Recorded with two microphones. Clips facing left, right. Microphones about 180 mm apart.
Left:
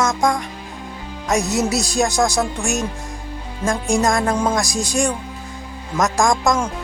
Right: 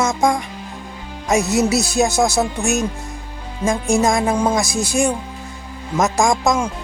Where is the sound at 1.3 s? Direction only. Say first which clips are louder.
Right 3 dB; 5° right (ahead or behind).